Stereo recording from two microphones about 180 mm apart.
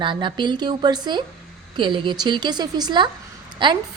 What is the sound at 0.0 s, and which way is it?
A woman's voice, 25° right (ahead or behind).